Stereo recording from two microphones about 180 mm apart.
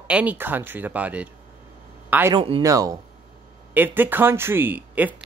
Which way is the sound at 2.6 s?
20° right (ahead or behind).